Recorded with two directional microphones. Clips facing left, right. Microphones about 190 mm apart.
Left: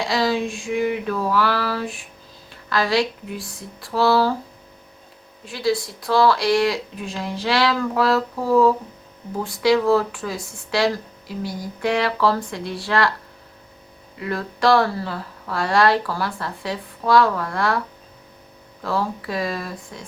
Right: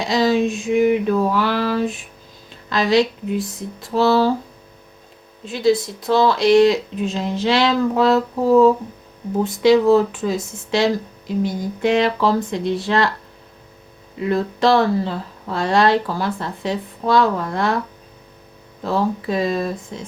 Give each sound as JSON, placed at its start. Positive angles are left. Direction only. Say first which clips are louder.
{"t": 0.0, "sound": "speech", "louder": "right 4 dB", "side_deg": -20}
{"t": 5.5, "sound": "speech", "louder": "right 5 dB", "side_deg": -20}
{"t": 14.2, "sound": "speech", "louder": "right 5 dB", "side_deg": -25}
{"t": 18.8, "sound": "speech", "louder": "right 4 dB", "side_deg": -20}